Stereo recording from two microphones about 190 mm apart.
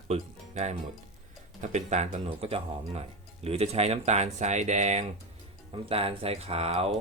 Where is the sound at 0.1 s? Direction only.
35° right (ahead or behind).